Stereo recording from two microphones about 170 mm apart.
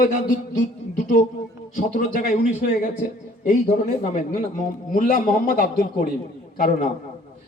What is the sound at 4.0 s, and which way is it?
A man's voice, 45° left (ahead or behind).